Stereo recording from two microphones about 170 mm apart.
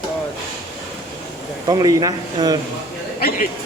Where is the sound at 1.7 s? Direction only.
20° right (ahead or behind).